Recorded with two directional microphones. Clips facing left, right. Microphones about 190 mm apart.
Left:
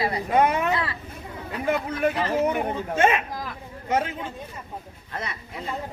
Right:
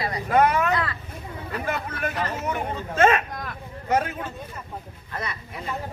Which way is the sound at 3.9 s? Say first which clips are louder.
Right 1 dB; 15° left (ahead or behind).